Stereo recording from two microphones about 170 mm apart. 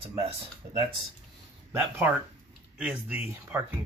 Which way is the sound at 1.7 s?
10° right (ahead or behind).